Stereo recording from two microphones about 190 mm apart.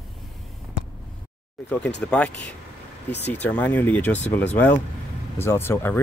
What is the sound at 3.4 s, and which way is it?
Speech, 10° left (ahead or behind).